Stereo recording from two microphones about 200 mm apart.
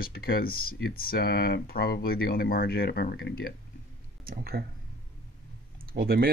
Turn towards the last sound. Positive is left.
turn(degrees=-50)  # may be behind; listen again after turning